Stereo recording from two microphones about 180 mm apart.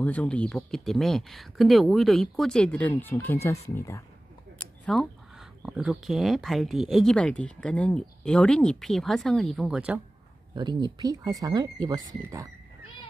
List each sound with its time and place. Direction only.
0.0 s speech: 10° left (ahead or behind)
4.9 s speech: centre (ahead or behind)
10.5 s speech: 25° right (ahead or behind)